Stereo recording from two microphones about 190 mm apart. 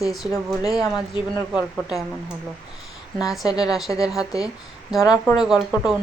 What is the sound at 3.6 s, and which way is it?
Speech, centre (ahead or behind).